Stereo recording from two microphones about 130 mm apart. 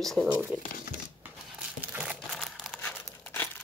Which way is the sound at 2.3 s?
Centre (ahead or behind).